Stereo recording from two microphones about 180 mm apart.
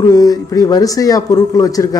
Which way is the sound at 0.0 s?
20° left (ahead or behind).